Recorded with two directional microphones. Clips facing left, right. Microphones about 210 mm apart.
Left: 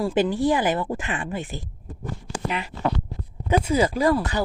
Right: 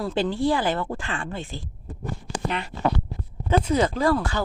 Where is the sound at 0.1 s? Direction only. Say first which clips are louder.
Right 1 dB; 15° left (ahead or behind).